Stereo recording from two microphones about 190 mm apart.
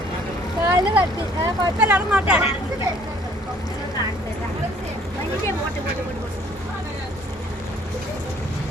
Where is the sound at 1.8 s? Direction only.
10° right (ahead or behind).